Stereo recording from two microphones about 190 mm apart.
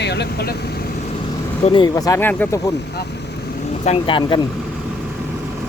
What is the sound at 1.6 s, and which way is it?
Speech, 25° left (ahead or behind).